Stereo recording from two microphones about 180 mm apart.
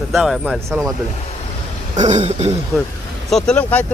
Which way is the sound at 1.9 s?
40° right (ahead or behind).